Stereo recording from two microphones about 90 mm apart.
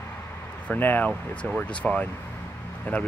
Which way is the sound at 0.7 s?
20° left (ahead or behind).